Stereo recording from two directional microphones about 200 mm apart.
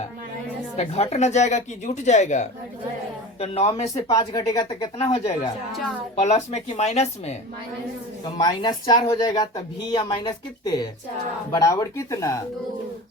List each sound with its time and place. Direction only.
0.8 s speech: 35° left (ahead or behind)
4.1 s speech: 20° left (ahead or behind)
6.1 s speech: 35° left (ahead or behind)
8.4 s speech: 20° left (ahead or behind)